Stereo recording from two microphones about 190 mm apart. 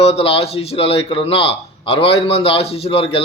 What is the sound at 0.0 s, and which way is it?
A man's voice, 30° left (ahead or behind).